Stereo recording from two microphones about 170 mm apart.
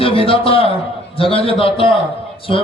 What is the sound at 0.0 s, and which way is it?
A man's voice, 30° left (ahead or behind).